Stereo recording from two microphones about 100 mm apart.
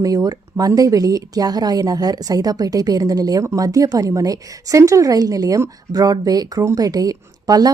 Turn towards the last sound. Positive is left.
turn(degrees=-40)  # may be behind; listen again after turning